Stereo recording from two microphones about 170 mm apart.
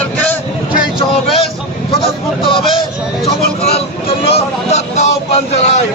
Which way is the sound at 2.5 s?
30° left (ahead or behind).